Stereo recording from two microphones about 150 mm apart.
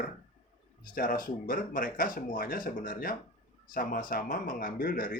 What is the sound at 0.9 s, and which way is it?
A man's voice, 65° left (ahead or behind).